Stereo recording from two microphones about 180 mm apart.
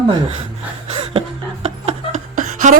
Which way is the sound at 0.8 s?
35° right (ahead or behind).